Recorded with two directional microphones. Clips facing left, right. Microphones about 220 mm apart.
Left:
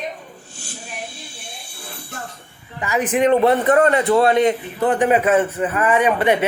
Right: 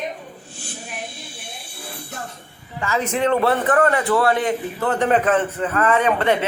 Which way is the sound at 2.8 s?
15° left (ahead or behind).